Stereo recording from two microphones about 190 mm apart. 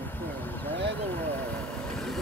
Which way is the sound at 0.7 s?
10° left (ahead or behind).